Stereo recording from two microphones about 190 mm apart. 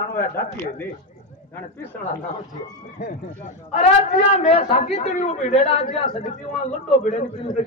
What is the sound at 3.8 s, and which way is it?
A man's voice, 30° left (ahead or behind).